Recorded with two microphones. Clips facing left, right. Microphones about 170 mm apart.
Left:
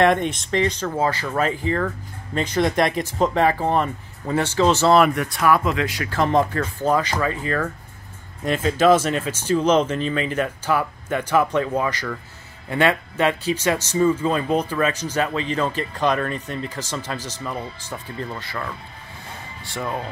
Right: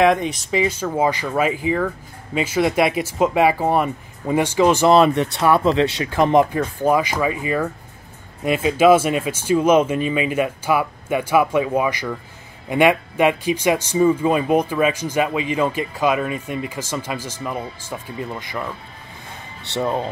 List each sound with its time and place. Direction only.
0.0 s speech: centre (ahead or behind)
19.7 s speech: 30° right (ahead or behind)